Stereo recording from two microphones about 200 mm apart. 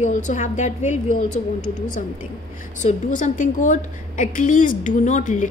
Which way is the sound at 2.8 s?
40° left (ahead or behind).